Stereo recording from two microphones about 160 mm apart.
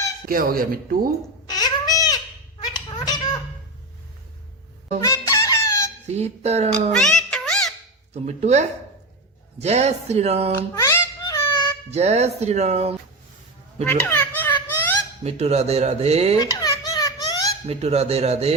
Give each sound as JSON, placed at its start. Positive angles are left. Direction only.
{"t": 0.3, "sound": "speech", "side_deg": -65}
{"t": 1.5, "sound": "cat", "side_deg": 25}
{"t": 4.9, "sound": "fowl", "side_deg": 20}
{"t": 6.1, "sound": "speech", "side_deg": -45}
{"t": 6.9, "sound": "music", "side_deg": 5}
{"t": 8.1, "sound": "speech", "side_deg": -45}
{"t": 10.8, "sound": "a sound", "side_deg": 20}
{"t": 11.9, "sound": "speech", "side_deg": -45}
{"t": 14.1, "sound": "a sound", "side_deg": 10}
{"t": 15.2, "sound": "speech", "side_deg": -40}
{"t": 16.4, "sound": "baby laughter", "side_deg": 25}
{"t": 17.7, "sound": "speech", "side_deg": -40}